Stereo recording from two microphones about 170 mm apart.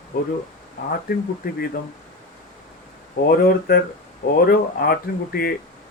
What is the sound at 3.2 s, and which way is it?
Speech, 60° left (ahead or behind).